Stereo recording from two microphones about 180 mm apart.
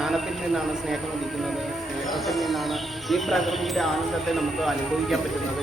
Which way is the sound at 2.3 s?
Centre (ahead or behind).